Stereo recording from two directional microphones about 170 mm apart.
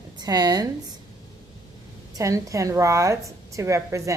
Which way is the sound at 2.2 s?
20° right (ahead or behind).